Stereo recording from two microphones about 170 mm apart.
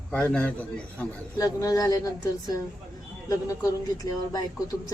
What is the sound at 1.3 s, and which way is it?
Speech, 20° left (ahead or behind).